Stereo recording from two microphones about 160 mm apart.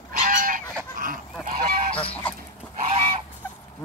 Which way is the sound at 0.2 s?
55° right (ahead or behind).